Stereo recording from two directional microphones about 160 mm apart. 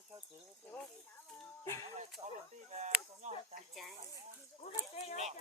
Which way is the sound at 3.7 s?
Centre (ahead or behind).